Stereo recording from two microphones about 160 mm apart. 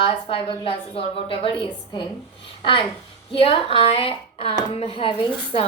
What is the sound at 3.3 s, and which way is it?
A woman's voice, 35° left (ahead or behind).